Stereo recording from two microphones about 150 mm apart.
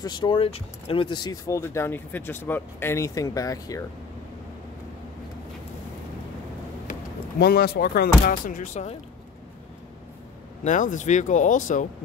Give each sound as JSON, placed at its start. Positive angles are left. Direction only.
{"t": 0.0, "sound": "speech", "side_deg": 30}
{"t": 6.9, "sound": "speech", "side_deg": 90}
{"t": 10.6, "sound": "speech", "side_deg": 55}